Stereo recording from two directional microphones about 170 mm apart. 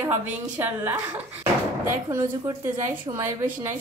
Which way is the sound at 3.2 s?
15° right (ahead or behind).